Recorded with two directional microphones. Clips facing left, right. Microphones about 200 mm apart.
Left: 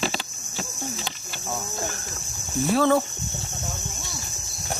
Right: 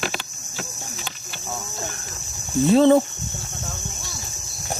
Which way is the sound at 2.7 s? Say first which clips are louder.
Right 6 dB; 20° right (ahead or behind).